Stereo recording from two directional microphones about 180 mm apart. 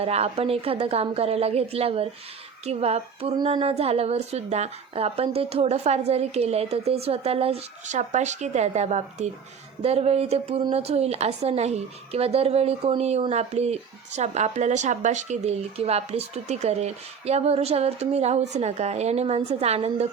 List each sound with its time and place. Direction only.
0.0 s a woman's voice: 35° right (ahead or behind)